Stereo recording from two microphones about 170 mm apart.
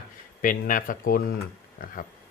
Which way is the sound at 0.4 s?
55° left (ahead or behind).